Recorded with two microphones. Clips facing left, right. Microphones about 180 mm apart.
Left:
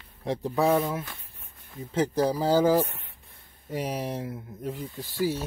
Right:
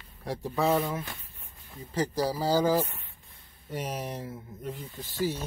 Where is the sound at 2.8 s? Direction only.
75° left (ahead or behind).